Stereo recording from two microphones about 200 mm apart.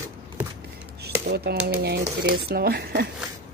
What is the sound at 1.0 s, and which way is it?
Dishes, 55° right (ahead or behind).